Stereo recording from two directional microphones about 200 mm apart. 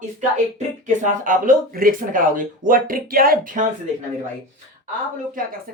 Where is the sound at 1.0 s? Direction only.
40° right (ahead or behind).